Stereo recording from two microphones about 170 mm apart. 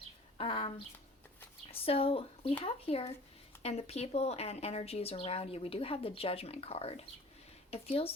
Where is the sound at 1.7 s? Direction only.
35° left (ahead or behind).